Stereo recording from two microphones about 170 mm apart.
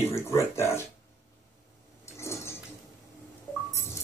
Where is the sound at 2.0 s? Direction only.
15° left (ahead or behind).